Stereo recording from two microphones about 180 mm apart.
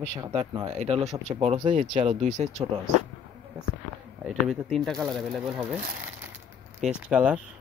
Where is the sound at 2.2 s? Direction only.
45° right (ahead or behind).